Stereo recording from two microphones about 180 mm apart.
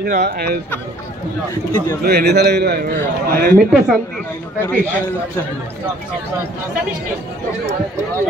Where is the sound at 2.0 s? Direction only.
60° right (ahead or behind).